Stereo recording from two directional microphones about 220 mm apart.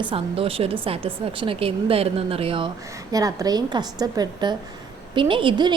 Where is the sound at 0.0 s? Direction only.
25° right (ahead or behind).